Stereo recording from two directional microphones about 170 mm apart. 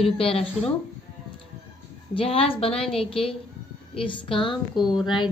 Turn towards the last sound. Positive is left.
turn(degrees=0)  # may be behind; listen again after turning